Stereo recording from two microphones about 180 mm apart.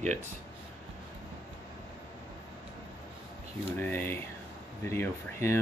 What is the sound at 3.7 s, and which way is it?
Speech, 10° left (ahead or behind).